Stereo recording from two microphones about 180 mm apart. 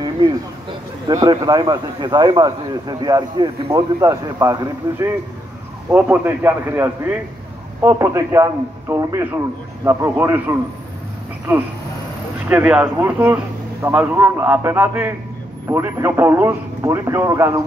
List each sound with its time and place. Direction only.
1.0 s a man's voice: 25° right (ahead or behind)